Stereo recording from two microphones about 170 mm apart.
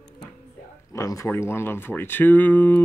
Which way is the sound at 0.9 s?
20° left (ahead or behind).